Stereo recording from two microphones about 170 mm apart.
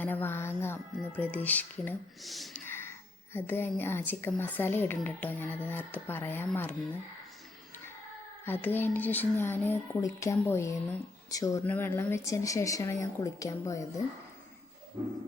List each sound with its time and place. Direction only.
0.0 s speech: 10° left (ahead or behind)
2.2 s speech: centre (ahead or behind)
2.6 s a sound: 15° left (ahead or behind)
3.3 s speech: 15° left (ahead or behind)
8.4 s speech: 10° left (ahead or behind)